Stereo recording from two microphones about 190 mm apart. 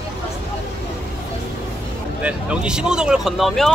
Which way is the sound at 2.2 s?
5° right (ahead or behind).